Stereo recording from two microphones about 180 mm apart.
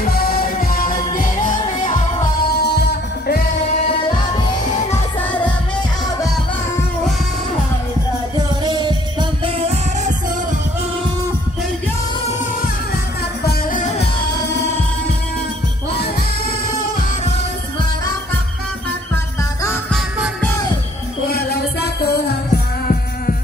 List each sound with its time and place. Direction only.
0.0 s music: 55° left (ahead or behind)
2.5 s music: 65° left (ahead or behind)
8.4 s music: 25° right (ahead or behind)
13.5 s music: 50° left (ahead or behind)
21.3 s music: 60° left (ahead or behind)